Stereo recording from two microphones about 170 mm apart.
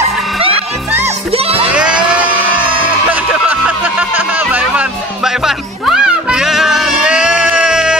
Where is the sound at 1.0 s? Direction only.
35° right (ahead or behind).